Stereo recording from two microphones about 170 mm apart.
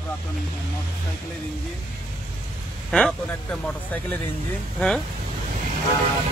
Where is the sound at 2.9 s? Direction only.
5° left (ahead or behind).